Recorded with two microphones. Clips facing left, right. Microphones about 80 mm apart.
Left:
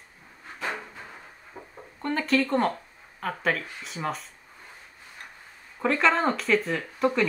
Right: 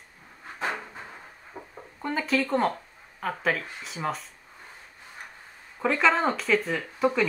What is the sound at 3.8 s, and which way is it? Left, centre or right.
Speech, centre.